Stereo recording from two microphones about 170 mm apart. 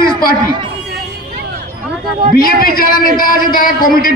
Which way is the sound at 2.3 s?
60° left (ahead or behind).